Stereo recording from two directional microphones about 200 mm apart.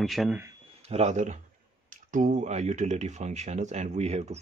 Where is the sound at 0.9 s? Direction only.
35° right (ahead or behind).